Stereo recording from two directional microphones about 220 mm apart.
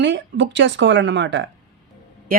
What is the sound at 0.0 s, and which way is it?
A woman's voice, 55° right (ahead or behind).